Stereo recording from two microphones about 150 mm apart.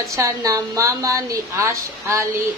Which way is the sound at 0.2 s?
20° right (ahead or behind).